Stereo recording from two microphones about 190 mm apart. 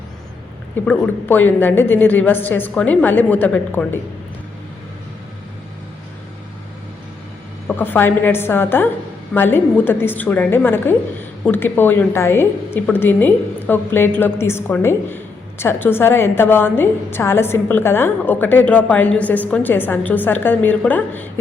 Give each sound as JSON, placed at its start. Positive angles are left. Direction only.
{"t": 0.9, "sound": "a woman's voice", "side_deg": 10}
{"t": 7.7, "sound": "a woman's voice", "side_deg": 10}